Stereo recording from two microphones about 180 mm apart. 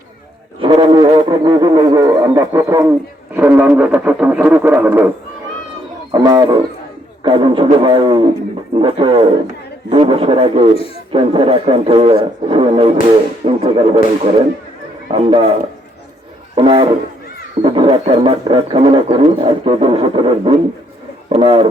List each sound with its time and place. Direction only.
0.6 s a sound: 25° right (ahead or behind)
3.3 s speech: 10° right (ahead or behind)
6.1 s speech: 25° right (ahead or behind)
16.6 s speech: 30° right (ahead or behind)